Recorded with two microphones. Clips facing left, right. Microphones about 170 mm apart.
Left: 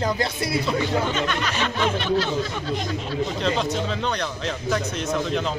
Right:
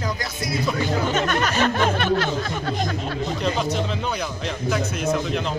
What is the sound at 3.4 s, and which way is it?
A man's voice, 5° right (ahead or behind).